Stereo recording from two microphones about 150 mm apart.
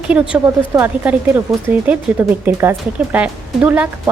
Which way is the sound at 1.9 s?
10° right (ahead or behind).